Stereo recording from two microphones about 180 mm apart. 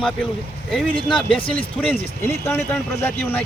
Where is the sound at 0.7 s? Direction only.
Centre (ahead or behind).